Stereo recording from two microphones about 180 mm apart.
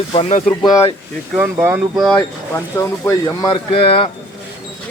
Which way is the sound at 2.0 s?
10° left (ahead or behind).